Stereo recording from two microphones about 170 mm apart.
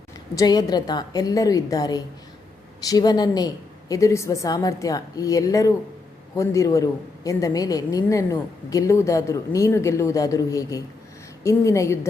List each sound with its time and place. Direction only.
0.3 s a woman's voice: 25° left (ahead or behind)